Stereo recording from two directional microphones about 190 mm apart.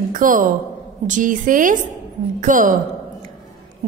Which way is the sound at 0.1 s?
45° right (ahead or behind).